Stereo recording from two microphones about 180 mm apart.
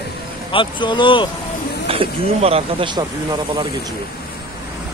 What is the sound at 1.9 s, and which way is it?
Speech, 35° right (ahead or behind).